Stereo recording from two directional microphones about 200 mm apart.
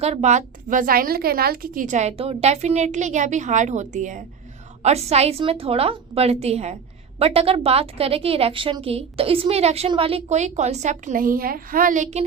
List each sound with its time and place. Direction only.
0.0 s a woman's voice: 35° right (ahead or behind)